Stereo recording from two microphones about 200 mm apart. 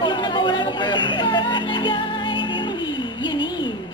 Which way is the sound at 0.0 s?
20° left (ahead or behind).